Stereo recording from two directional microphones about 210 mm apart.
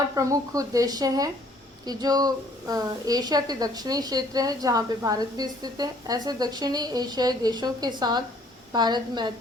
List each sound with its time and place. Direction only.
0.2 s a woman's voice: 15° right (ahead or behind)